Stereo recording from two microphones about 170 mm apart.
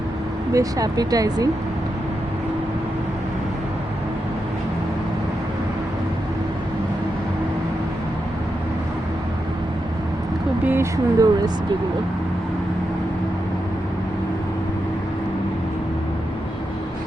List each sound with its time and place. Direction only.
0.5 s speech: 20° right (ahead or behind)
10.7 s speech: 15° right (ahead or behind)